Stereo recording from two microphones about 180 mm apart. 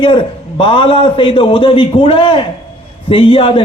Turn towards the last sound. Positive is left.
turn(degrees=30)  # may be behind; listen again after turning